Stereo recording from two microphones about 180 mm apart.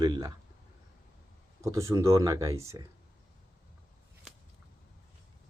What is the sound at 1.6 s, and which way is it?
Speech, 15° right (ahead or behind).